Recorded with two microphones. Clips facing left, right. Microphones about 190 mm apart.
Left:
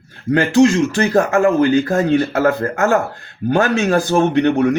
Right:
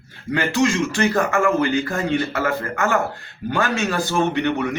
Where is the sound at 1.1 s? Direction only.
50° left (ahead or behind).